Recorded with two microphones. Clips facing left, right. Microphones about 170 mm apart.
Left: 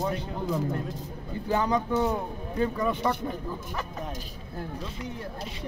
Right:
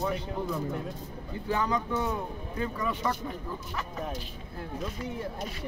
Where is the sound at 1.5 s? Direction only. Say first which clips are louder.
Left 4 dB; 30° left (ahead or behind).